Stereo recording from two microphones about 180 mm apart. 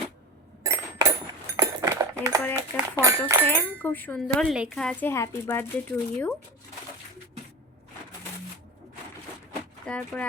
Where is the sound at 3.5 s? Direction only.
10° left (ahead or behind).